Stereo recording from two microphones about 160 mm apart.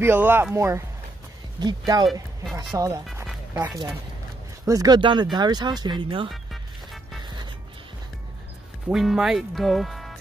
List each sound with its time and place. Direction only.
0.0 s speech: 15° right (ahead or behind); by 6.2 s 30° right (ahead or behind)
6.3 s music: centre (ahead or behind)
7.2 s music: 30° right (ahead or behind)
8.8 s speech: centre (ahead or behind)